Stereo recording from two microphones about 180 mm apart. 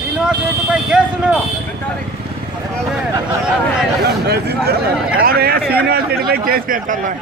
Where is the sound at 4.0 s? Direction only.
65° right (ahead or behind).